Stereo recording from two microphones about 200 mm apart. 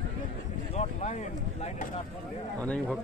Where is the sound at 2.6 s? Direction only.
5° left (ahead or behind).